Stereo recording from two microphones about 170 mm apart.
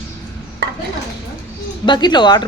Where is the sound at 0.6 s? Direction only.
75° right (ahead or behind).